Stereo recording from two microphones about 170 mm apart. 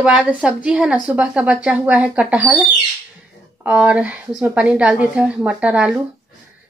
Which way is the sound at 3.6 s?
5° right (ahead or behind).